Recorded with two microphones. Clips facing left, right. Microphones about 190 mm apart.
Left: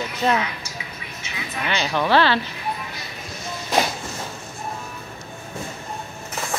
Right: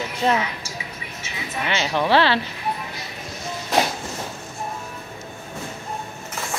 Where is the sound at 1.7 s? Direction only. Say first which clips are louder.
Even; 25° right (ahead or behind).